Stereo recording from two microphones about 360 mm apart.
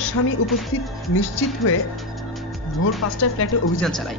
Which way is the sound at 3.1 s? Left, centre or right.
Left.